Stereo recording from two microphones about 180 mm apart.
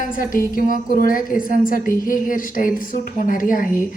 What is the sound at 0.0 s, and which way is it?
A woman's voice, 50° left (ahead or behind).